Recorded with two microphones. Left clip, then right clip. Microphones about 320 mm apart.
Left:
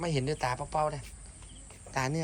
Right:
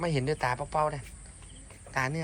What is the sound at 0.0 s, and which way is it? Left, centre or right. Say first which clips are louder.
Speech: right 2 dB; centre.